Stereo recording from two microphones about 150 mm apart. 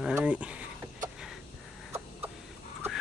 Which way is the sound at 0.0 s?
10° right (ahead or behind).